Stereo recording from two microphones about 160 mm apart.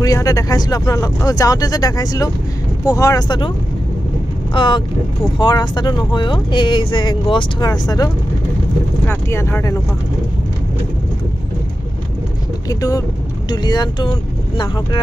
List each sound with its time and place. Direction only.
0.0 s speech: 20° left (ahead or behind)
4.6 s speech: 30° left (ahead or behind)
12.6 s speech: 25° left (ahead or behind)